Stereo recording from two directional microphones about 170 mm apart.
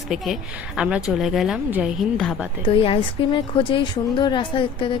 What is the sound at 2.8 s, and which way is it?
A woman's voice, 30° left (ahead or behind).